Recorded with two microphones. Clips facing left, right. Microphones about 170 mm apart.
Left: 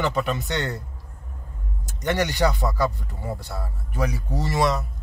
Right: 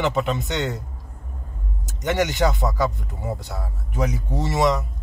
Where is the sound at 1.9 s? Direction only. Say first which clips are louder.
Right 2 dB; 20° right (ahead or behind).